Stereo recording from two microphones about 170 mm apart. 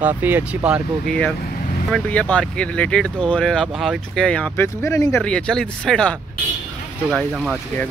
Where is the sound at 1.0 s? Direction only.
5° left (ahead or behind).